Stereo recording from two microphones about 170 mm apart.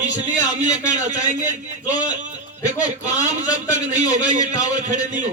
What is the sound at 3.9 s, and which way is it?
A man's voice, 45° right (ahead or behind).